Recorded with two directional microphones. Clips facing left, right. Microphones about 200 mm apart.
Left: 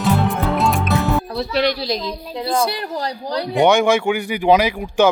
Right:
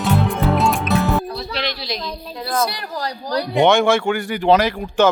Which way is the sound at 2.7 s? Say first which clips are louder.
Left 3 dB; 25° left (ahead or behind).